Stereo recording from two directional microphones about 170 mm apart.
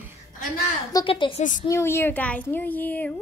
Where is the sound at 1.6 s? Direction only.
15° left (ahead or behind).